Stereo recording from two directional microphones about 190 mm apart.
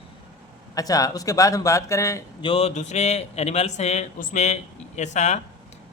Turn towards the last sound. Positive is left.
turn(degrees=40)  # may be behind; listen again after turning